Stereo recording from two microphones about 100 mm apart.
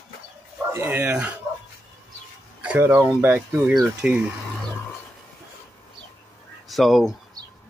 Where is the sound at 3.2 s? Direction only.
20° right (ahead or behind).